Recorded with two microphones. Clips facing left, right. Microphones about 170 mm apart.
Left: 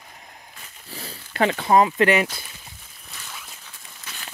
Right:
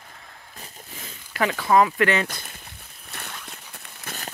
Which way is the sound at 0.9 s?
35° left (ahead or behind).